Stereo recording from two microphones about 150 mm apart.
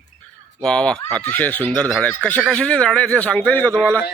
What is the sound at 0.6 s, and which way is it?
A man's voice, 5° left (ahead or behind).